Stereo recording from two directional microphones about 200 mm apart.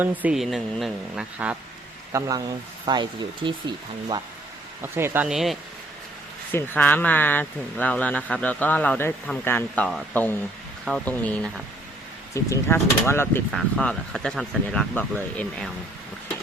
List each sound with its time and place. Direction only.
0.0 s speech: 5° right (ahead or behind)
2.1 s speech: 15° right (ahead or behind)
4.8 s speech: 10° right (ahead or behind)
6.5 s speech: 10° left (ahead or behind)
13.5 s speech: centre (ahead or behind)